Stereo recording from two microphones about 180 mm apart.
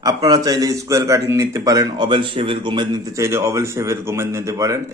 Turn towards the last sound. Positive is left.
turn(degrees=-20)  # may be behind; listen again after turning